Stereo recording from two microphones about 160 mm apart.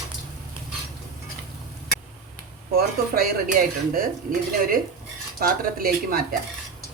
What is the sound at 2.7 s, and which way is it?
Speech, 65° right (ahead or behind).